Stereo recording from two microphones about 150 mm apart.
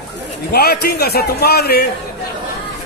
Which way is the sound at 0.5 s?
90° left.